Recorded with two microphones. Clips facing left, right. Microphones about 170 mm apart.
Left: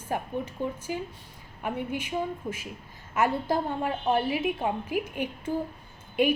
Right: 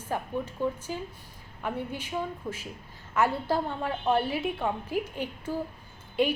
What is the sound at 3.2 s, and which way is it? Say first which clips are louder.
A woman's voice: left 1 dB; 15° left (ahead or behind).